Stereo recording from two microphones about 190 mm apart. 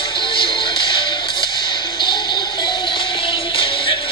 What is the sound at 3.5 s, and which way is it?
Music, 25° left (ahead or behind).